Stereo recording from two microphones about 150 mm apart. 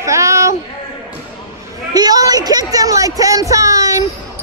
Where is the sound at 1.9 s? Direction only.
25° right (ahead or behind).